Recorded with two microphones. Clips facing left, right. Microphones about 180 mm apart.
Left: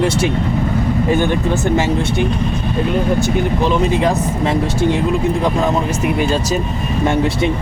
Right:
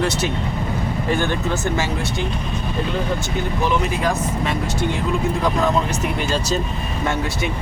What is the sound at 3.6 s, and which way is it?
Speech, 20° left (ahead or behind).